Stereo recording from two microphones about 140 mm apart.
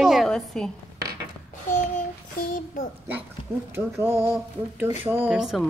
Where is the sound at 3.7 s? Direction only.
15° right (ahead or behind).